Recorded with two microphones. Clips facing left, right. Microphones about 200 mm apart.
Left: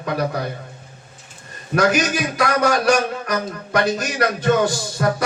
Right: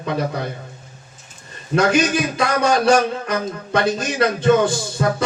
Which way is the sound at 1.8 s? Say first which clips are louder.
Right 1 dB; 25° right (ahead or behind).